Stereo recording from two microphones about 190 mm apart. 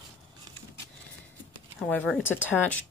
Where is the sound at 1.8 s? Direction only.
10° left (ahead or behind).